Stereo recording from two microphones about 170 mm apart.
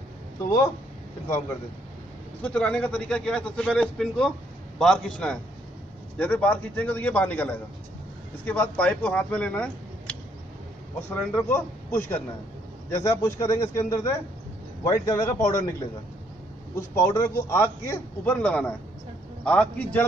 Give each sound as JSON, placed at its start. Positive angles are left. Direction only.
{"t": 2.4, "sound": "a man's voice", "side_deg": 5}
{"t": 16.7, "sound": "a man's voice", "side_deg": 15}